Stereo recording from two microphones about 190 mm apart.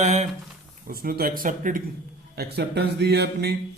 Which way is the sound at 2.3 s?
60° right (ahead or behind).